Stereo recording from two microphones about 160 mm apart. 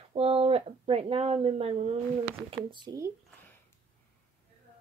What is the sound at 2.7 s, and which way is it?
Speech, 25° right (ahead or behind).